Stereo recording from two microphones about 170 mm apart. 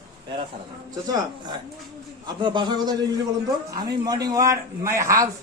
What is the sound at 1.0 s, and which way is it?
A man's voice, 25° right (ahead or behind).